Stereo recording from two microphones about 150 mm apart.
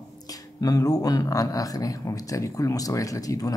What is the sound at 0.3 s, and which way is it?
Speech, 25° left (ahead or behind).